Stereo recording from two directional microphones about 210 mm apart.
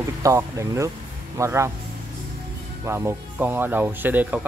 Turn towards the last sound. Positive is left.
turn(degrees=-10)  # may be behind; listen again after turning